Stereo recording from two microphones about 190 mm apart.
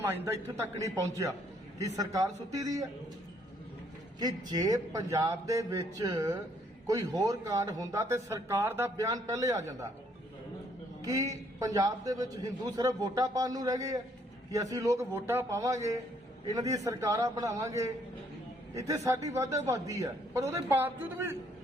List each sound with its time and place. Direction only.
0.0 s speech: 15° right (ahead or behind)
4.2 s speech: 20° right (ahead or behind)
11.0 s a man's voice: 15° right (ahead or behind)